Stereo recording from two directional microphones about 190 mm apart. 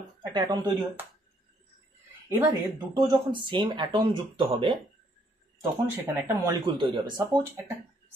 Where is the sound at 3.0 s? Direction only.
25° right (ahead or behind).